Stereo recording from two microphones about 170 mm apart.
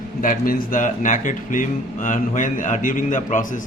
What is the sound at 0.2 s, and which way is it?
A man's voice, 55° left (ahead or behind).